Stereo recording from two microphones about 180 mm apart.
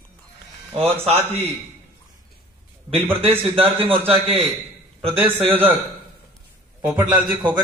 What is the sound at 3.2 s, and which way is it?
A man's voice, 30° right (ahead or behind).